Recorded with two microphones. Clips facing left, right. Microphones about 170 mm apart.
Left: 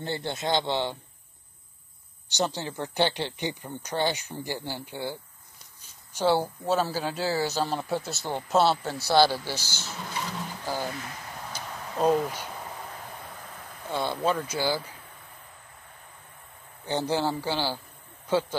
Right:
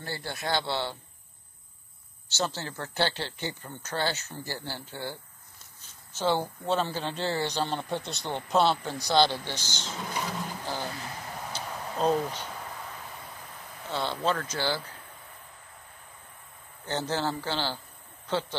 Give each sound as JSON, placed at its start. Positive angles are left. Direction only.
{"t": 0.0, "sound": "a man's voice", "side_deg": 20}
{"t": 2.2, "sound": "speech", "side_deg": 15}
{"t": 10.7, "sound": "a sound", "side_deg": 10}
{"t": 13.8, "sound": "speech", "side_deg": 10}
{"t": 16.8, "sound": "speech", "side_deg": 15}